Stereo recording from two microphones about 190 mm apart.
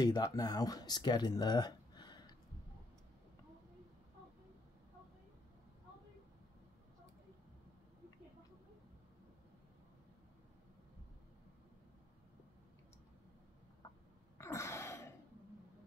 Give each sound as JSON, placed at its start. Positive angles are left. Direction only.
{"t": 0.0, "sound": "speech", "side_deg": 20}
{"t": 14.4, "sound": "sneeze", "side_deg": 15}